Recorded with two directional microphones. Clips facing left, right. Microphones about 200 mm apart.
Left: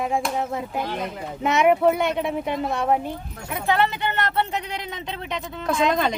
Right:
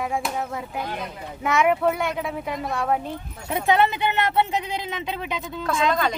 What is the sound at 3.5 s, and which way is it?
Speech, 20° right (ahead or behind).